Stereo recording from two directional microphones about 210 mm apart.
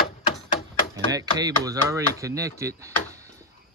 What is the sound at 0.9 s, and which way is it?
Speech, 15° right (ahead or behind).